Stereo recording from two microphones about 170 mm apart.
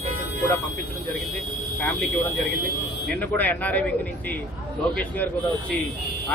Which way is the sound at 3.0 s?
10° left (ahead or behind).